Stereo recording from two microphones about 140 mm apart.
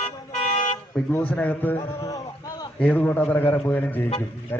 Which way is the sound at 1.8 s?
25° left (ahead or behind).